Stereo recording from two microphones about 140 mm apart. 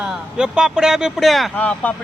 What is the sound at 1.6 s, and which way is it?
Speech, 10° left (ahead or behind).